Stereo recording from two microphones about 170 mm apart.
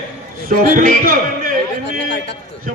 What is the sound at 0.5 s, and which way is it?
Speech, 55° right (ahead or behind).